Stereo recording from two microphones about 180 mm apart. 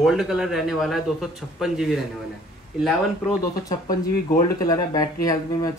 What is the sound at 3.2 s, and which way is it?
Speech, 20° left (ahead or behind).